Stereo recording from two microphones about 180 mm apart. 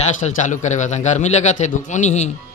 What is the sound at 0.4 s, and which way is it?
A man's voice, 45° left (ahead or behind).